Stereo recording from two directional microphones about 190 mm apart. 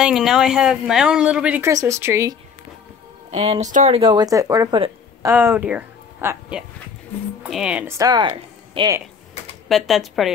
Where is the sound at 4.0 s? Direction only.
25° right (ahead or behind).